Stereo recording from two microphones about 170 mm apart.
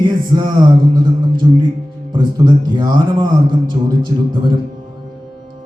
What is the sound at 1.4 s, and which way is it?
Speech, 25° right (ahead or behind).